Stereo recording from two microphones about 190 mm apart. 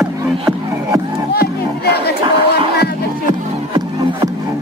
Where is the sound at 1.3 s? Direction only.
55° left (ahead or behind).